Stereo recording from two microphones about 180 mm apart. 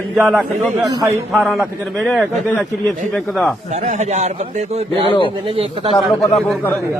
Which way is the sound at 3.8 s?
40° right (ahead or behind).